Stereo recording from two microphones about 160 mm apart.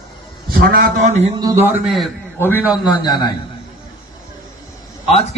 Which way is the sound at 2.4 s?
15° left (ahead or behind).